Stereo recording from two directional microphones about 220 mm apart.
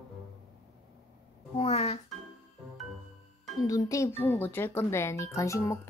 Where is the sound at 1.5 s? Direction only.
25° left (ahead or behind).